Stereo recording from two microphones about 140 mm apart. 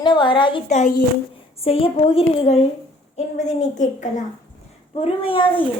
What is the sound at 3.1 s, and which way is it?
A woman's voice, 60° left (ahead or behind).